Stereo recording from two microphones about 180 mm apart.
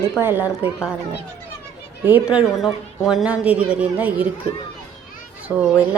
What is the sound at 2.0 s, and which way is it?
Speech, 10° right (ahead or behind).